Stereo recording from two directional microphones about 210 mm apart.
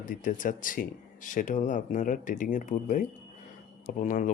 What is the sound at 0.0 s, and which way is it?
Speech, 40° left (ahead or behind).